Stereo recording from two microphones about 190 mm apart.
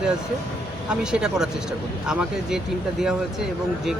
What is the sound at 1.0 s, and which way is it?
Speech, 5° right (ahead or behind).